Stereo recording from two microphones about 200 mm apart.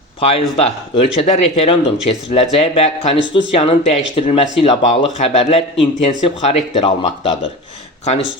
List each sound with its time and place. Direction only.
0.2 s speech: 30° left (ahead or behind)